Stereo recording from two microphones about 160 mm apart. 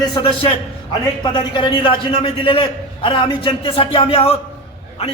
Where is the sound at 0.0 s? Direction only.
25° left (ahead or behind).